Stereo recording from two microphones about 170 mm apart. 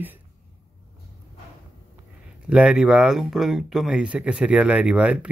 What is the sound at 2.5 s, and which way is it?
Speech, 5° right (ahead or behind).